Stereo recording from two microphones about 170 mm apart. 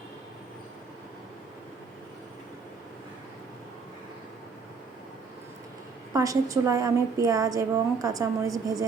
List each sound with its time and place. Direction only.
6.1 s a woman's voice: 20° right (ahead or behind)